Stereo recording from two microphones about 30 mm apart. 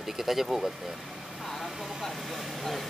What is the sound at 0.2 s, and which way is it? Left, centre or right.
Speech, centre.